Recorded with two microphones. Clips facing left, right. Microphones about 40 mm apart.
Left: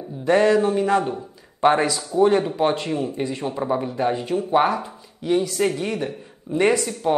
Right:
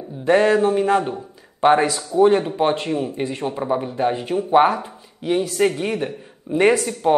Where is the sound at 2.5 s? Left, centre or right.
Right.